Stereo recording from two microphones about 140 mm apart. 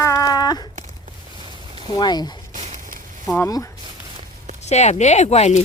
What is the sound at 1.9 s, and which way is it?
Speech, 30° left (ahead or behind).